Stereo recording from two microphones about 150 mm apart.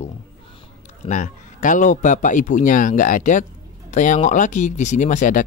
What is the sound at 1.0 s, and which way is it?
Speech, 55° left (ahead or behind).